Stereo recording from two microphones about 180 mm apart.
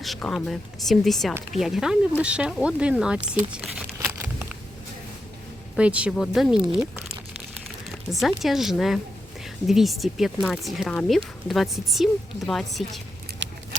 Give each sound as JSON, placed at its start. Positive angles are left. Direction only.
{"t": 0.0, "sound": "speech", "side_deg": 0}
{"t": 3.5, "sound": "crumpling", "side_deg": -5}
{"t": 5.7, "sound": "speech", "side_deg": -5}
{"t": 7.9, "sound": "speech", "side_deg": 0}
{"t": 13.4, "sound": "biting", "side_deg": -90}